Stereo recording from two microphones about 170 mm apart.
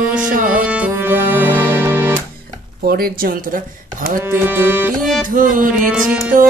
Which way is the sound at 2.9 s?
60° right (ahead or behind).